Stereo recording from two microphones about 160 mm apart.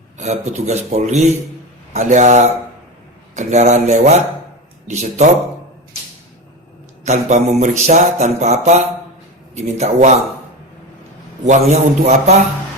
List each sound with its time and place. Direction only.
0.2 s mantra: 45° right (ahead or behind)
7.0 s mantra: 45° right (ahead or behind)
11.4 s mantra: 45° right (ahead or behind)